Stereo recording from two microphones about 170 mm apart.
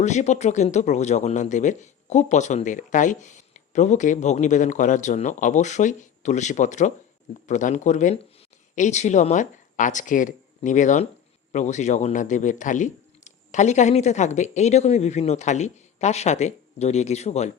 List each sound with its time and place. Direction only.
0.0 s speech: 45° left (ahead or behind)